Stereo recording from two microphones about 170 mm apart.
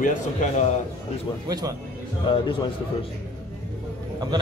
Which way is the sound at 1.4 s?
20° right (ahead or behind).